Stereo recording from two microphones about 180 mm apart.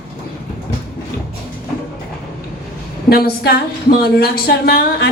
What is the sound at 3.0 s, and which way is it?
Speech, 60° left (ahead or behind).